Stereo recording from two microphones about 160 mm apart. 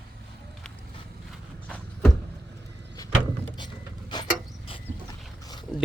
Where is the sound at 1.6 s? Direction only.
5° left (ahead or behind).